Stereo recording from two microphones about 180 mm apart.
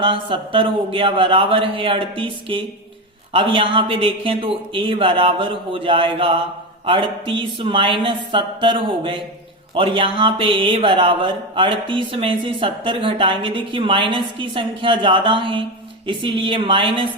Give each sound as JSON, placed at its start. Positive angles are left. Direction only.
{"t": 0.0, "sound": "speech", "side_deg": -30}